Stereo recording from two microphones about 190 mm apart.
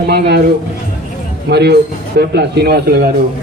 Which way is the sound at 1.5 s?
60° right (ahead or behind).